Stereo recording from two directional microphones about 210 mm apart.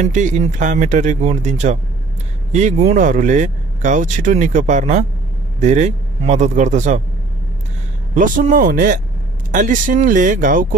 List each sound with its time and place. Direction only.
0.0 s speech: 35° right (ahead or behind)
8.1 s speech: 40° right (ahead or behind)